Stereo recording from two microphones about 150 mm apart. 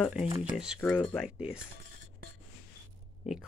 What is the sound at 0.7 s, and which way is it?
Speech, 10° left (ahead or behind).